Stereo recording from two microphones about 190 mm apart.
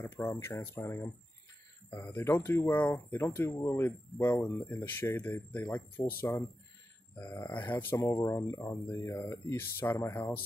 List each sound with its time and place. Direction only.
0.0 s speech: 15° left (ahead or behind)
2.1 s speech: 15° left (ahead or behind)
7.2 s speech: 10° left (ahead or behind)